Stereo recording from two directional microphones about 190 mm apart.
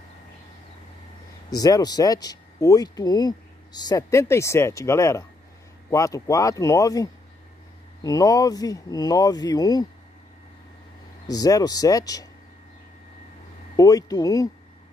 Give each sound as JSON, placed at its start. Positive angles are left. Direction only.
{"t": 1.5, "sound": "speech", "side_deg": 20}
{"t": 11.2, "sound": "speech", "side_deg": 20}
{"t": 13.7, "sound": "speech", "side_deg": 20}